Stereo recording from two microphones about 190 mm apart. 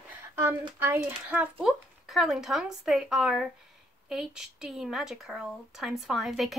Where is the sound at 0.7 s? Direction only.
10° right (ahead or behind).